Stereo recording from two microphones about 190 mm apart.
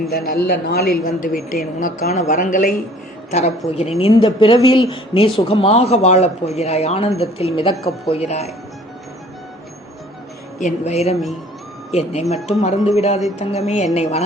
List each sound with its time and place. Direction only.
0.1 s speech: 55° left (ahead or behind)
3.7 s speech: 30° left (ahead or behind)
10.6 s speech: 40° left (ahead or behind)